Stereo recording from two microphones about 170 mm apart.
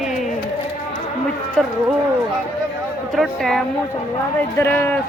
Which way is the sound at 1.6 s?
5° left (ahead or behind).